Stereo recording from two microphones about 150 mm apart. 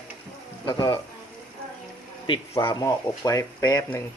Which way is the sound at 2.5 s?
20° left (ahead or behind).